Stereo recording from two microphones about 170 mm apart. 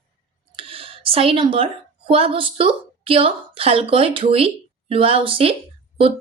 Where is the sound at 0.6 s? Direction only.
35° right (ahead or behind).